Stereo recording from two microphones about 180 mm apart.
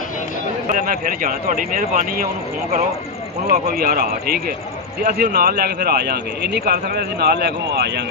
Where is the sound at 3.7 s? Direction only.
60° right (ahead or behind).